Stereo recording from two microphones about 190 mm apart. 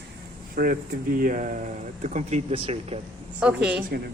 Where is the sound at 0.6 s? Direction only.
50° right (ahead or behind); by 2.9 s 30° right (ahead or behind).